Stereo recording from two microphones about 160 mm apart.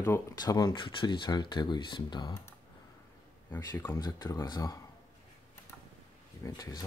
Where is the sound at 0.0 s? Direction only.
20° left (ahead or behind).